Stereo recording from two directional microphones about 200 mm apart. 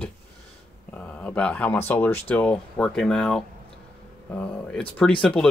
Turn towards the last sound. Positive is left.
turn(degrees=5)  # may be behind; listen again after turning